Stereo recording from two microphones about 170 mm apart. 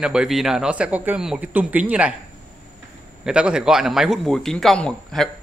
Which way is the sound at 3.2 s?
5° right (ahead or behind).